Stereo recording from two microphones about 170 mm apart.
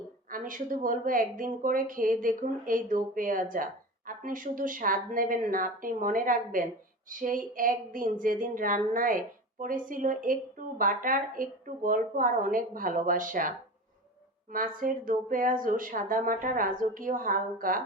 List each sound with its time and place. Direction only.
0.3 s a woman's voice: 55° right (ahead or behind)
14.5 s a woman's voice: 55° right (ahead or behind)